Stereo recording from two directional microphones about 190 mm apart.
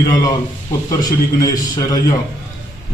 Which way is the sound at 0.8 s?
20° left (ahead or behind).